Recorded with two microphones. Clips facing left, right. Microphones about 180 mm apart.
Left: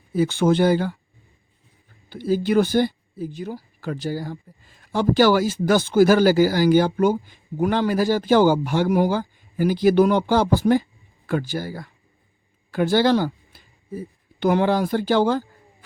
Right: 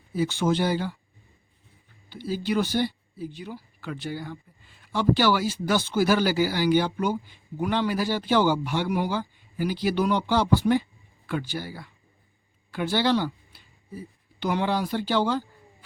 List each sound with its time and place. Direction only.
0.1 s speech: 50° left (ahead or behind)
2.0 s speech: 50° left (ahead or behind)